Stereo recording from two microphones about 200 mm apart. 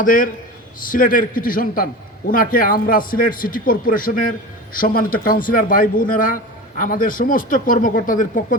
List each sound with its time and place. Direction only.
0.0 s a man's voice: 40° left (ahead or behind)